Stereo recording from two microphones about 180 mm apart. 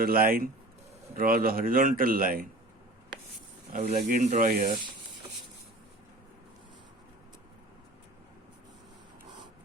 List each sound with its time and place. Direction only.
0.0 s a man's voice: 55° right (ahead or behind)
3.7 s a man's voice: 40° right (ahead or behind)